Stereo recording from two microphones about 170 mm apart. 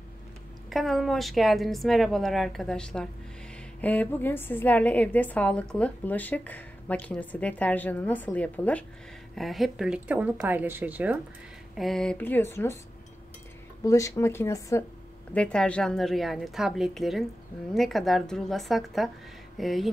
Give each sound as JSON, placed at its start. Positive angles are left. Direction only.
{"t": 0.7, "sound": "a woman's voice", "side_deg": 0}
{"t": 11.7, "sound": "a woman's voice", "side_deg": 0}
{"t": 13.8, "sound": "a woman's voice", "side_deg": 20}
{"t": 15.3, "sound": "a woman's voice", "side_deg": 5}